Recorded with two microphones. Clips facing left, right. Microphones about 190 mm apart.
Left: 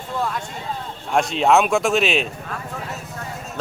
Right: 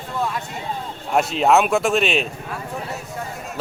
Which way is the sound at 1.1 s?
5° right (ahead or behind).